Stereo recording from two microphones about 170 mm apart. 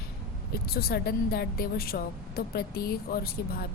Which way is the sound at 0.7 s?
65° left (ahead or behind).